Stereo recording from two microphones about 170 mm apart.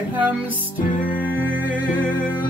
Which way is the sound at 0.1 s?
10° right (ahead or behind).